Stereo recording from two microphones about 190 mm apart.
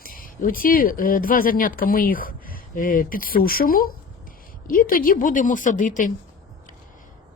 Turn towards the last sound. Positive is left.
turn(degrees=45)  # may be behind; listen again after turning